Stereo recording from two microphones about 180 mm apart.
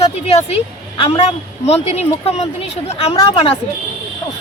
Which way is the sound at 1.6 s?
35° left (ahead or behind).